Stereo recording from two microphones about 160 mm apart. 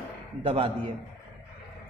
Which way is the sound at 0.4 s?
35° right (ahead or behind).